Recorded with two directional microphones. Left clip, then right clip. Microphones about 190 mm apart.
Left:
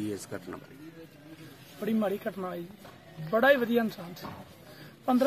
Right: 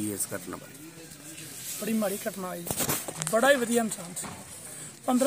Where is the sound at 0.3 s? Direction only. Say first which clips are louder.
Right 3 dB; 45° right (ahead or behind).